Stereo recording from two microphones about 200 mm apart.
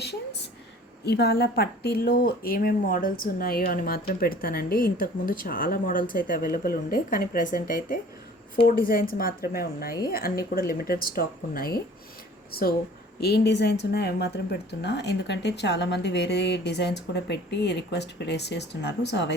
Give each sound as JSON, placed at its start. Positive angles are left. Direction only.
{"t": 1.0, "sound": "a woman's voice", "side_deg": 55}